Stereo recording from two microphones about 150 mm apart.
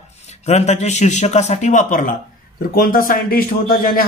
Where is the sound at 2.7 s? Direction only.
70° left (ahead or behind).